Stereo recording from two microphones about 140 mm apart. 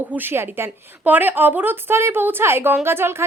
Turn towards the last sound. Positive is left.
turn(degrees=-15)  # may be behind; listen again after turning